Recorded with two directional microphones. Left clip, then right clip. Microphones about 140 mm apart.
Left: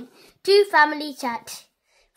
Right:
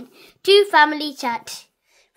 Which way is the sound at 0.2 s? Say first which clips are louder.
Right 3 dB; 25° right (ahead or behind).